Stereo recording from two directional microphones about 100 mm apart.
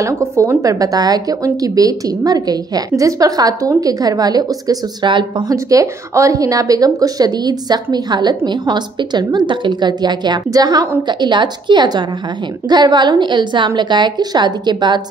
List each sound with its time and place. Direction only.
0.0 s speech: 30° right (ahead or behind); by 5.2 s 45° right (ahead or behind)
5.5 s a woman's voice: 35° right (ahead or behind)